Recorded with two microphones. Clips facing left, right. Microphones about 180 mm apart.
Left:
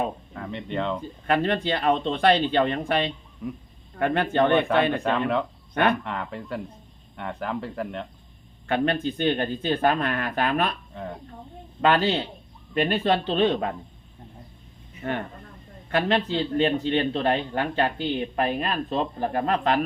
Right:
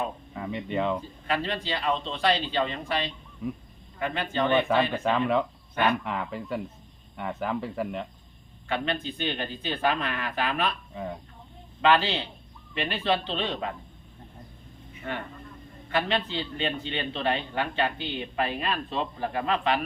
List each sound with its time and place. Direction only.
0.3 s speech: 5° right (ahead or behind)
1.3 s a man's voice: 50° left (ahead or behind)
3.4 s speech: centre (ahead or behind)
3.9 s speech: 55° left (ahead or behind)
5.0 s speech: centre (ahead or behind)
5.7 s speech: 55° left (ahead or behind)
6.1 s speech: centre (ahead or behind)
8.6 s a man's voice: 50° left (ahead or behind)
10.9 s speech: 5° right (ahead or behind)
11.8 s a man's voice: 45° left (ahead or behind)
15.9 s a man's voice: 50° left (ahead or behind)